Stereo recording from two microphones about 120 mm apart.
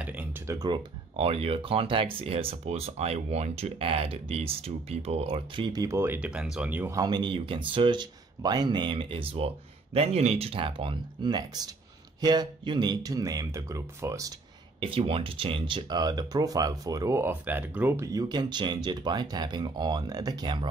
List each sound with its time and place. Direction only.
0.0 s a sound: 10° right (ahead or behind)
0.5 s speech: 35° right (ahead or behind); by 5.7 s 50° right (ahead or behind)
5.7 s speech: 30° right (ahead or behind); by 6.9 s 10° right (ahead or behind)
6.9 s speech: 35° right (ahead or behind)
14.8 s speech: 50° right (ahead or behind)